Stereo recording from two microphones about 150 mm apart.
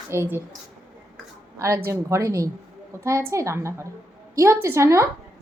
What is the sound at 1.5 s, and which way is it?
A woman's voice, 20° right (ahead or behind).